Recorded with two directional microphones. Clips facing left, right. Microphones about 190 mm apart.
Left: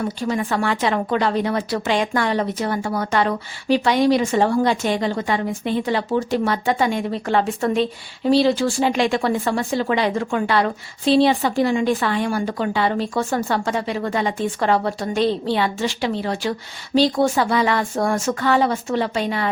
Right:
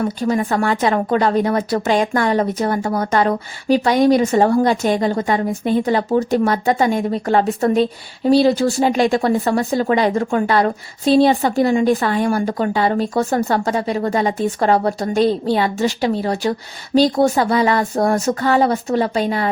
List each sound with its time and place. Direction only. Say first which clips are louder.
0.2 s a woman's voice: right 3 dB; 40° right (ahead or behind)